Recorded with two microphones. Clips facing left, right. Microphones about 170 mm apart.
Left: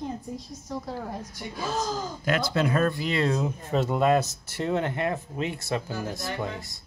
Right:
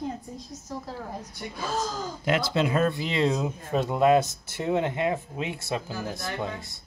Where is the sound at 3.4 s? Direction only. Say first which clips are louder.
Left 1 dB; 10° right (ahead or behind).